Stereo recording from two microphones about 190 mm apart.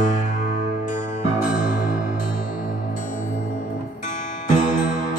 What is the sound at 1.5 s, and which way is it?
Music, 45° left (ahead or behind).